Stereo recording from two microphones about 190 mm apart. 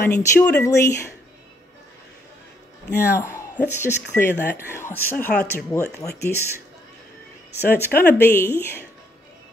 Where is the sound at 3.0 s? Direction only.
15° left (ahead or behind).